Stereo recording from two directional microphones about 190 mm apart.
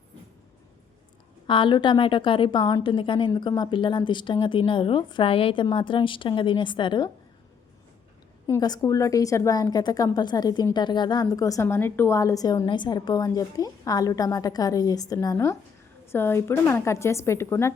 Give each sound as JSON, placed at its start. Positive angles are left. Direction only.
{"t": 1.5, "sound": "a woman's voice", "side_deg": 25}
{"t": 8.4, "sound": "a woman's voice", "side_deg": 15}